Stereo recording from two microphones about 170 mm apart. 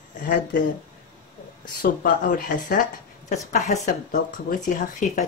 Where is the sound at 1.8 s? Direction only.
60° left (ahead or behind).